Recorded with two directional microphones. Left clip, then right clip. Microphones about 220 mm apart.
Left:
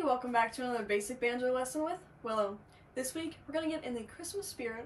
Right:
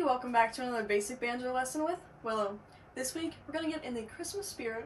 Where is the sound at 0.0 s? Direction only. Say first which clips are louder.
Right 2 dB; 5° right (ahead or behind).